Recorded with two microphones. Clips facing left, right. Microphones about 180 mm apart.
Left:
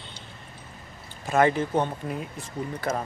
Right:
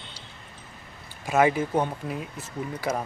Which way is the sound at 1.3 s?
10° right (ahead or behind).